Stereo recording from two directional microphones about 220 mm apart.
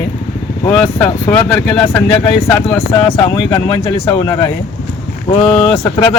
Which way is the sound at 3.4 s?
20° left (ahead or behind).